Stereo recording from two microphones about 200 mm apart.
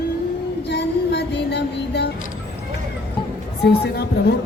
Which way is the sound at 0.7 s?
60° left (ahead or behind).